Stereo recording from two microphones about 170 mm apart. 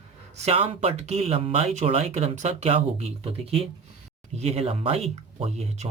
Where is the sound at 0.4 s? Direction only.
35° right (ahead or behind).